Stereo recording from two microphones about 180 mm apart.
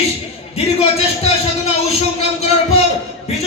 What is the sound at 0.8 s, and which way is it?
Speech, 35° left (ahead or behind).